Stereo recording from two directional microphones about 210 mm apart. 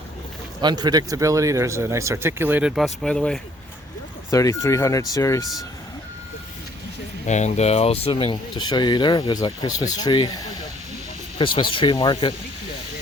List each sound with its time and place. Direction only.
0.6 s speech: 20° right (ahead or behind); by 3.4 s 5° left (ahead or behind)
4.3 s speech: 15° left (ahead or behind)
7.3 s speech: 35° left (ahead or behind)